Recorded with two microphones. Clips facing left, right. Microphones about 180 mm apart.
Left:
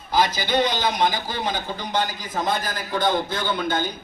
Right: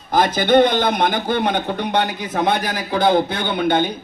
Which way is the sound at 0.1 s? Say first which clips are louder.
Right 7 dB; 55° right (ahead or behind).